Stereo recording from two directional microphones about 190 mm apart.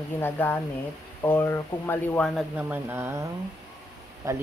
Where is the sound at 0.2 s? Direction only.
10° left (ahead or behind).